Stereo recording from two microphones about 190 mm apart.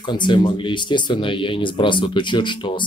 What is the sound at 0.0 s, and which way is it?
Speech, 25° left (ahead or behind).